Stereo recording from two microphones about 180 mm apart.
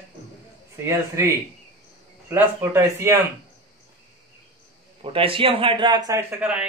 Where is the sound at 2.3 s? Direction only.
10° right (ahead or behind).